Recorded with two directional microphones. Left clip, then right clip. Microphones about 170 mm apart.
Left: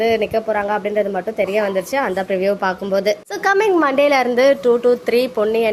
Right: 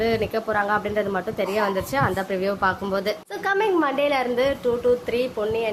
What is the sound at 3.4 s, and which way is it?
A woman's voice, 35° left (ahead or behind).